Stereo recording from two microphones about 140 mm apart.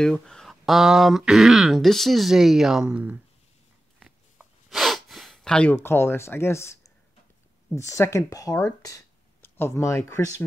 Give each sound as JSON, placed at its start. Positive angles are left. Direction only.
{"t": 0.0, "sound": "speech", "side_deg": 5}
{"t": 4.0, "sound": "a sound", "side_deg": 0}
{"t": 7.7, "sound": "speech", "side_deg": 20}